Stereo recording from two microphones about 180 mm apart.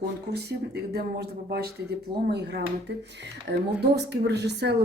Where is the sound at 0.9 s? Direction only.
60° right (ahead or behind).